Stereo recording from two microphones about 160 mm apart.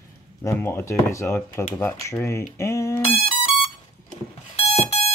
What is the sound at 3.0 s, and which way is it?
Music, 35° left (ahead or behind).